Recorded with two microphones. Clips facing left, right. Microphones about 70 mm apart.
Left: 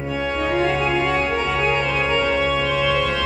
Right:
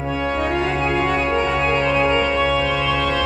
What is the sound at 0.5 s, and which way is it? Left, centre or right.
Organ, centre.